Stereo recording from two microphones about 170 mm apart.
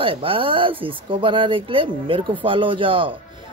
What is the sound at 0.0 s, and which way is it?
Speech, 30° right (ahead or behind).